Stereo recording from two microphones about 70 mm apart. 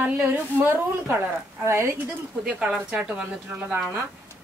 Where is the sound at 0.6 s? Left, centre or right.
Right.